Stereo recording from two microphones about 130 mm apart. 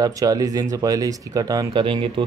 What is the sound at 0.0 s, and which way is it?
Speech, 30° right (ahead or behind).